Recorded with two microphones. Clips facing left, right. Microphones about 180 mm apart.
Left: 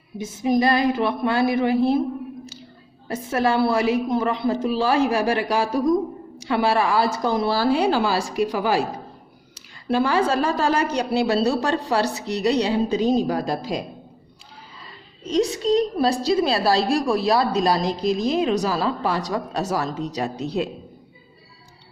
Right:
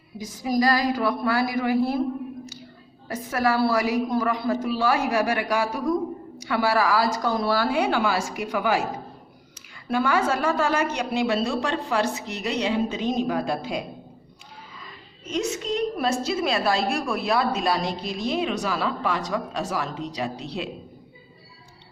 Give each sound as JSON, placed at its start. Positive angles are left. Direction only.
{"t": 0.2, "sound": "a woman's voice", "side_deg": 25}
{"t": 3.1, "sound": "a woman's voice", "side_deg": 30}
{"t": 9.9, "sound": "a woman's voice", "side_deg": 30}
{"t": 15.2, "sound": "a woman's voice", "side_deg": 35}